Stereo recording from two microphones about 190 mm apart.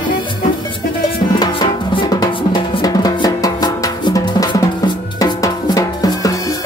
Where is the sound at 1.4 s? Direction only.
25° left (ahead or behind).